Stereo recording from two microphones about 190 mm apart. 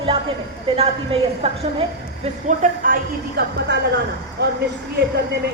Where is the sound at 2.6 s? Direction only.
45° right (ahead or behind).